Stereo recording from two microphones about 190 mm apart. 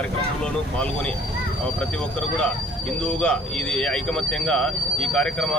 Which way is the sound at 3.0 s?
5° left (ahead or behind).